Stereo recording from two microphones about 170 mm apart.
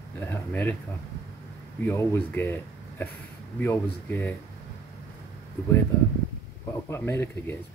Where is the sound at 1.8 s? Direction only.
15° left (ahead or behind).